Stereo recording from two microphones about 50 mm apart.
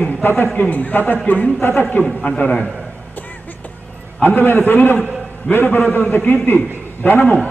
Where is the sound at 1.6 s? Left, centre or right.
Left.